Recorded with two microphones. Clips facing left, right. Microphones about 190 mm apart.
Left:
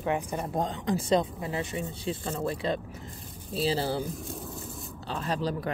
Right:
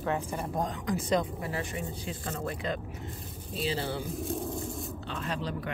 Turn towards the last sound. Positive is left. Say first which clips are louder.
# left 4 dB
turn(degrees=35)  # may be behind; listen again after turning